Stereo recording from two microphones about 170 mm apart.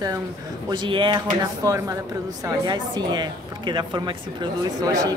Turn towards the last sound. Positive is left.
turn(degrees=-20)  # may be behind; listen again after turning